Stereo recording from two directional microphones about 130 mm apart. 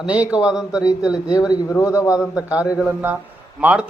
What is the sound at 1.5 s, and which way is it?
Speech, 25° left (ahead or behind).